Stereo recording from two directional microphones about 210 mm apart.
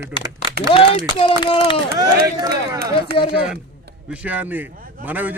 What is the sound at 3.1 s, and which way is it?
Speech, 45° right (ahead or behind).